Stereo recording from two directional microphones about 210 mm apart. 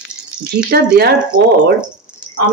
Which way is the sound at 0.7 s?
50° right (ahead or behind).